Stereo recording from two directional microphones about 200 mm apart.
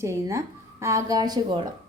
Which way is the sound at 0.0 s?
15° right (ahead or behind).